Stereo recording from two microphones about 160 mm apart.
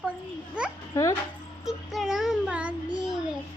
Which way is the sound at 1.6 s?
Centre (ahead or behind).